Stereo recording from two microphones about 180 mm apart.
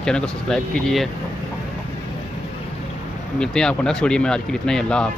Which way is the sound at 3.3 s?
5° left (ahead or behind).